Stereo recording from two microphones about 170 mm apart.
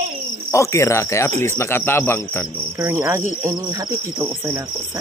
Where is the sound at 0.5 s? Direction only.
15° left (ahead or behind).